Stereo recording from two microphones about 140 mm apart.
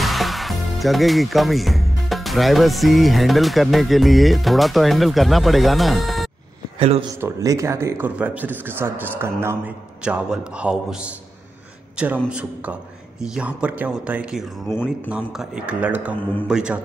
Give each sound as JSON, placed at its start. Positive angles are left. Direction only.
{"t": 0.0, "sound": "speech", "side_deg": 0}
{"t": 6.8, "sound": "speech", "side_deg": -45}
{"t": 7.2, "sound": "speech", "side_deg": -20}
{"t": 12.3, "sound": "speech", "side_deg": -10}